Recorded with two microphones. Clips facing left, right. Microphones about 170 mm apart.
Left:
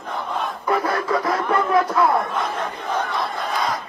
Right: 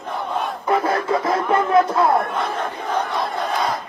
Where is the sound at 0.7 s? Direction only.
25° right (ahead or behind).